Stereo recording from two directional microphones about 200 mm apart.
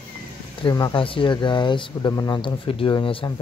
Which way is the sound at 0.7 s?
20° left (ahead or behind).